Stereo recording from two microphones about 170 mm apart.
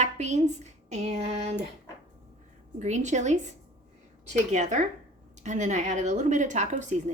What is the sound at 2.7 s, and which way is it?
Speech, 45° right (ahead or behind).